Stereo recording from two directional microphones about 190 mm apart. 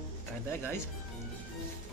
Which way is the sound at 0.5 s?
10° left (ahead or behind).